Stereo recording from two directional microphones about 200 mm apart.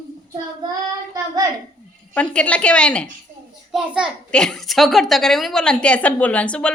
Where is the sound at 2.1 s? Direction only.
5° left (ahead or behind).